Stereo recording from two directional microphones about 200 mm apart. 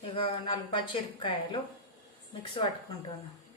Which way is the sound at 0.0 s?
25° left (ahead or behind).